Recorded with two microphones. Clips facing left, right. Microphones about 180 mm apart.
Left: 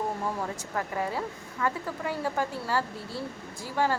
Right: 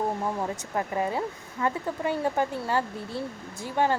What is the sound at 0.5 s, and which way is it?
Speech, 20° right (ahead or behind).